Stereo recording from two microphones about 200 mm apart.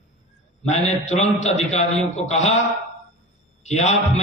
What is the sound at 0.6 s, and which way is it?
A man's voice, 35° left (ahead or behind).